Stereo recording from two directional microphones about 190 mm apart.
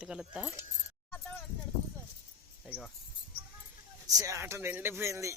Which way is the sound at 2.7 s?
55° left (ahead or behind).